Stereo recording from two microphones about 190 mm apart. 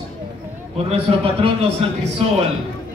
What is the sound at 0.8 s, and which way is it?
A man's voice, 30° right (ahead or behind).